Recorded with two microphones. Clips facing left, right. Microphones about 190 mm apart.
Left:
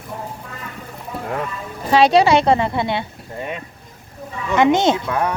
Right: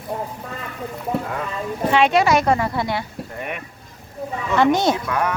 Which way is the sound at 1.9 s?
35° left (ahead or behind).